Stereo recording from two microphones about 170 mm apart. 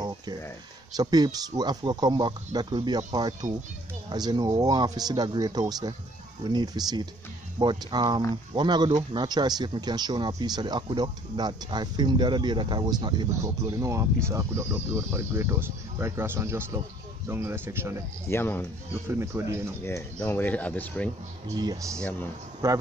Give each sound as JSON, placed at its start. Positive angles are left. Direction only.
{"t": 0.9, "sound": "speech", "side_deg": -25}
{"t": 18.3, "sound": "speech", "side_deg": 10}
{"t": 19.0, "sound": "speech", "side_deg": -15}
{"t": 19.8, "sound": "speech", "side_deg": 15}
{"t": 21.5, "sound": "speech", "side_deg": -20}